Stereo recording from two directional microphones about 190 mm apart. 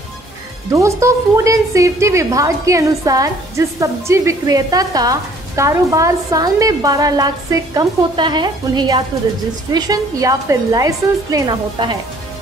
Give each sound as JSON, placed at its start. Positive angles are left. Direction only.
{"t": 0.7, "sound": "a woman's voice", "side_deg": -15}